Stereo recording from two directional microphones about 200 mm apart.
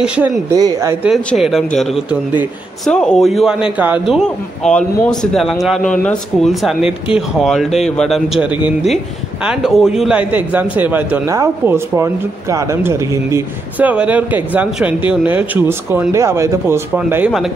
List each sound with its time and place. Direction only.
0.0 s a man's voice: 5° right (ahead or behind)
0.6 s speech: 20° right (ahead or behind)
1.0 s a man's voice: centre (ahead or behind)
4.1 s a man's voice: 5° left (ahead or behind)